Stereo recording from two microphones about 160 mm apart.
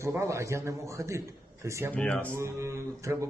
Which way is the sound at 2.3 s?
15° right (ahead or behind).